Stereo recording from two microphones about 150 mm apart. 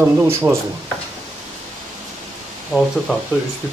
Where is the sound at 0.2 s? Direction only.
15° right (ahead or behind).